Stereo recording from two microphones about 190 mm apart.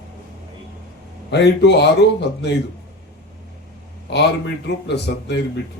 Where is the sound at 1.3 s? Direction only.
65° left (ahead or behind).